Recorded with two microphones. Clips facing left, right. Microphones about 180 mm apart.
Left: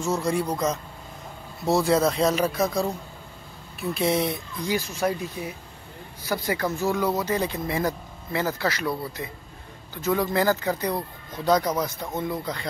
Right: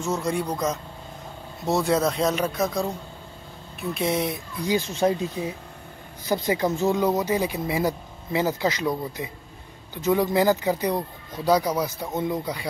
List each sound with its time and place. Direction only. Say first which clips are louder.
0.0 s speech: left 1 dB; centre (ahead or behind)
3.9 s speech: left 1 dB; centre (ahead or behind)
4.6 s speech: right 3 dB; 25° right (ahead or behind)